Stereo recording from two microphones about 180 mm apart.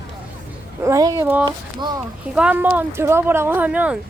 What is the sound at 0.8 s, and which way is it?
Speech, 15° right (ahead or behind).